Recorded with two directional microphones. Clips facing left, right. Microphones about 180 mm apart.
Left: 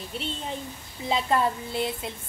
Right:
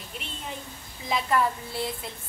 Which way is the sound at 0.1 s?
30° left (ahead or behind).